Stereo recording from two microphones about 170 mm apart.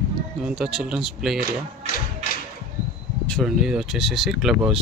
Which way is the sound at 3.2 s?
5° left (ahead or behind).